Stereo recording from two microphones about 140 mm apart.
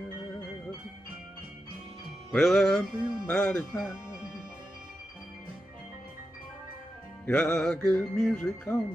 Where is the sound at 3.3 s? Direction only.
5° left (ahead or behind).